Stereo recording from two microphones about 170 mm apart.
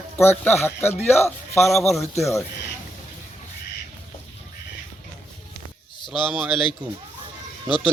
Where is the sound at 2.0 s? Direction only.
15° left (ahead or behind).